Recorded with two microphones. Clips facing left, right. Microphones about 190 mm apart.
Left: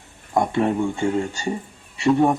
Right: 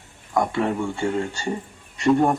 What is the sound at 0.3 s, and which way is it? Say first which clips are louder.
Speech: left 2 dB; 25° left (ahead or behind).